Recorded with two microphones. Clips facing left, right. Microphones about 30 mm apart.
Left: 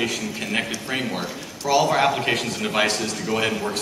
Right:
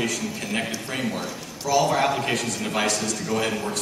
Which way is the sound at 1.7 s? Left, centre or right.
Left.